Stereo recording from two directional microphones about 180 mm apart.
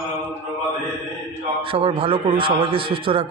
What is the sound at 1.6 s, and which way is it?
Speech, 30° right (ahead or behind).